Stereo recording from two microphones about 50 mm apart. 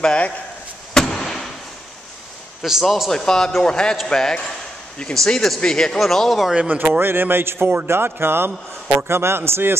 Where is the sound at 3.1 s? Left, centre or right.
Centre.